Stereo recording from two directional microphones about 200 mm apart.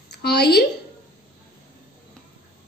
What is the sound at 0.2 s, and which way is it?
Speech, 55° left (ahead or behind).